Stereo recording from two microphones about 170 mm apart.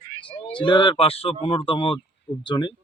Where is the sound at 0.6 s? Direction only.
30° left (ahead or behind).